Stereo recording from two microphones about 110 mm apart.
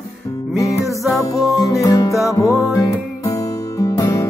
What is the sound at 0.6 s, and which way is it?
Music, 30° left (ahead or behind).